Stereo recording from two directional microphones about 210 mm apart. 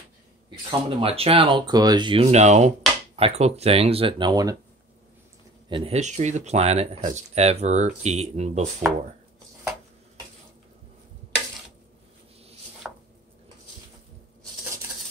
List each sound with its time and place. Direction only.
0.7 s speech: 25° right (ahead or behind)
5.7 s speech: 30° right (ahead or behind)
12.8 s chopping: 5° right (ahead or behind)